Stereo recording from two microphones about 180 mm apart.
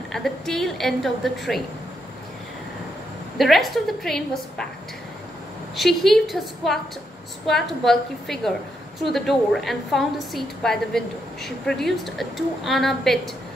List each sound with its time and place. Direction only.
0.1 s a woman's voice: centre (ahead or behind)
3.3 s a woman's voice: centre (ahead or behind)
5.8 s a woman's voice: centre (ahead or behind)